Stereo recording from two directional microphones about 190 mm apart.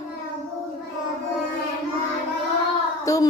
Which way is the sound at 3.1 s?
15° left (ahead or behind).